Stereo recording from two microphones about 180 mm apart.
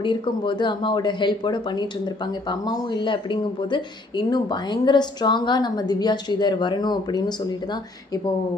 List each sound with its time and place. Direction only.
0.0 s speech: 25° left (ahead or behind)
2.9 s speech: 25° left (ahead or behind)